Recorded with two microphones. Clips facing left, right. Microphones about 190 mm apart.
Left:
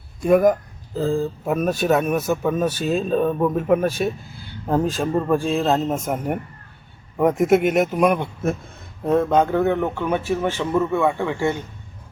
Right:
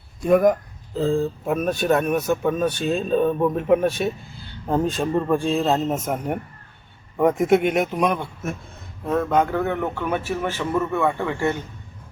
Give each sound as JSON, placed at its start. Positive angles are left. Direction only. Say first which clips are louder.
{"t": 0.3, "sound": "speech", "louder": "left 1 dB", "side_deg": 0}
{"t": 9.1, "sound": "a man's voice", "louder": "left 3 dB", "side_deg": 20}